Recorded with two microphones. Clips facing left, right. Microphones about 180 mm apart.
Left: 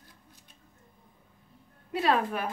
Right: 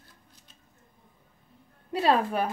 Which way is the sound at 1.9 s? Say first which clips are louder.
Right 3 dB; 30° right (ahead or behind).